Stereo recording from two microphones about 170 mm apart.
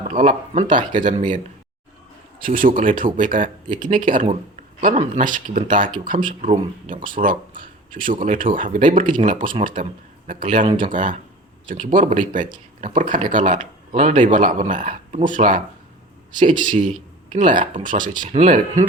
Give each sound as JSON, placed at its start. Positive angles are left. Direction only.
{"t": 0.1, "sound": "speech", "side_deg": -45}
{"t": 2.4, "sound": "speech", "side_deg": -55}